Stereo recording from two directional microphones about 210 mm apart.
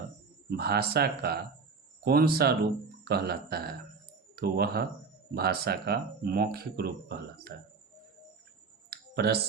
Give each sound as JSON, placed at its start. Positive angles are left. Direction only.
{"t": 0.5, "sound": "speech", "side_deg": -50}
{"t": 8.9, "sound": "clicking", "side_deg": -50}